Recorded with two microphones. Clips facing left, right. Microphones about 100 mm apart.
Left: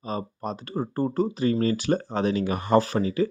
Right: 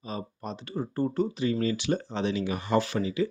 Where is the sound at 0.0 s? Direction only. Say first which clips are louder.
Left 5 dB; 40° left (ahead or behind).